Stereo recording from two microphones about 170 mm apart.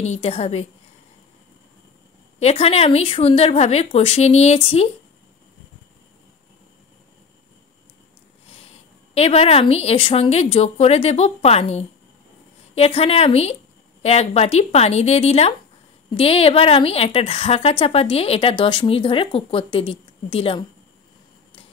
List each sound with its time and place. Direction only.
0.0 s a woman's voice: 40° left (ahead or behind)
2.4 s a woman's voice: 35° left (ahead or behind)
9.1 s a woman's voice: 35° left (ahead or behind)